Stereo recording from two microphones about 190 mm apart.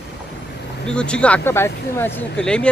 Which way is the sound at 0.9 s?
5° left (ahead or behind).